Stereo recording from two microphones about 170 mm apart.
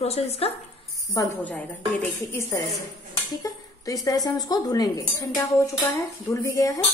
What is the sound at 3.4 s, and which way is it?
Speech, 20° left (ahead or behind).